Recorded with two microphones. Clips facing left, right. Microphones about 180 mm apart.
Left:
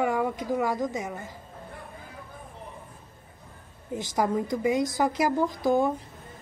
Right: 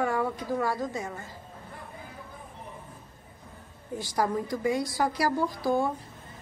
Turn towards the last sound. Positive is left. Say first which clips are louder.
# left 3 dB
turn(degrees=20)  # may be behind; listen again after turning